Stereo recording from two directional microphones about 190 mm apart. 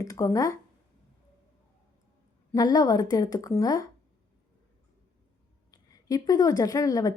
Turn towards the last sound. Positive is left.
turn(degrees=20)  # may be behind; listen again after turning